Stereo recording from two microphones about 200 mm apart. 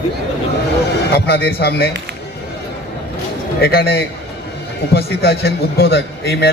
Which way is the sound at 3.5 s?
50° left (ahead or behind).